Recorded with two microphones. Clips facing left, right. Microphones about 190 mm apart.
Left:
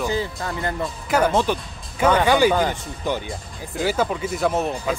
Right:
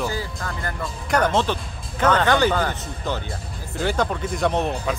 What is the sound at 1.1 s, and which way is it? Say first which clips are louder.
Speech: left 1 dB; 10° left (ahead or behind).